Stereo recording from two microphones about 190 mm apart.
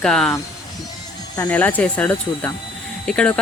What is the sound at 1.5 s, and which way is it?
Speech, 10° left (ahead or behind).